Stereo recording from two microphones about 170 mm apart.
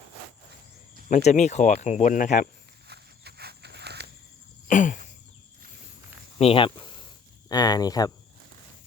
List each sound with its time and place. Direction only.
1.1 s speech: 45° left (ahead or behind)
2.8 s walk: 70° right (ahead or behind)
4.7 s a sound: 50° left (ahead or behind)
6.4 s speech: 30° left (ahead or behind)